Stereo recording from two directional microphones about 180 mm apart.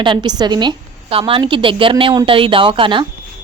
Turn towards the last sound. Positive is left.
turn(degrees=-30)  # may be behind; listen again after turning